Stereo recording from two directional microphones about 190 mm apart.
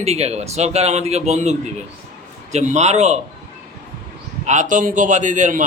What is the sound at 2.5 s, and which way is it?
Speech, 35° right (ahead or behind).